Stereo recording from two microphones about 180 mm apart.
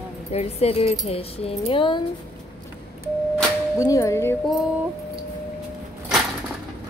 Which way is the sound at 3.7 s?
20° left (ahead or behind).